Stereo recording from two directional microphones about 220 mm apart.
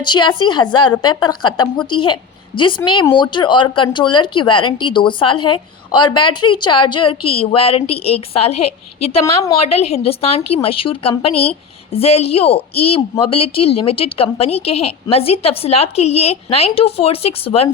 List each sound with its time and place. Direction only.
0.0 s a woman's voice: 20° left (ahead or behind)
9.2 s a woman's voice: 15° left (ahead or behind)
9.6 s a woman's voice: 30° left (ahead or behind)